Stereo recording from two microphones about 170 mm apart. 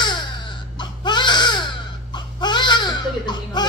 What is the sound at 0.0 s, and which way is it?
Baby cry, 25° left (ahead or behind).